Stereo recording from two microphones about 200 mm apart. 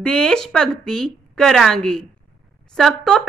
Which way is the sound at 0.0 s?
5° left (ahead or behind).